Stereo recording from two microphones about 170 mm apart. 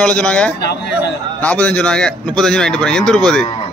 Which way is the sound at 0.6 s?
75° left (ahead or behind).